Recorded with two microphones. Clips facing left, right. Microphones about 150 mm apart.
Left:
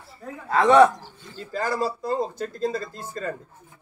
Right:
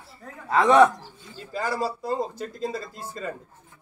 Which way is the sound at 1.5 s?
5° right (ahead or behind).